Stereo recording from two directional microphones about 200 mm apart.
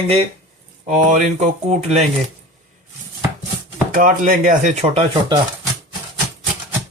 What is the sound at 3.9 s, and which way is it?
Speech, 40° right (ahead or behind).